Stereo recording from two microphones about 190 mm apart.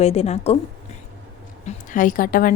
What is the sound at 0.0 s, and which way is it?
Speech, 30° left (ahead or behind).